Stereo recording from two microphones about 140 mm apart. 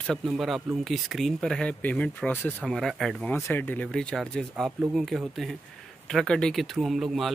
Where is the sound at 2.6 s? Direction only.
Centre (ahead or behind).